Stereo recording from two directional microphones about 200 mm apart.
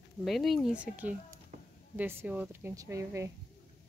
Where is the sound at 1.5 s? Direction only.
40° right (ahead or behind).